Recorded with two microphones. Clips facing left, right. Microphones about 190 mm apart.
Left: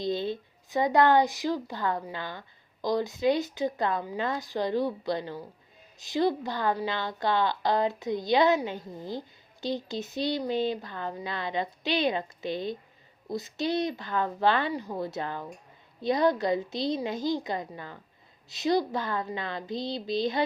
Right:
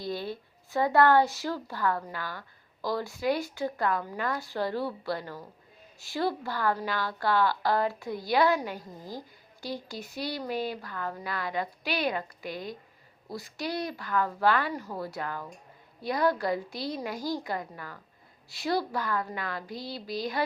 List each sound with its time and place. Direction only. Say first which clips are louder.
0.0 s a woman's voice: left 4 dB; 20° left (ahead or behind)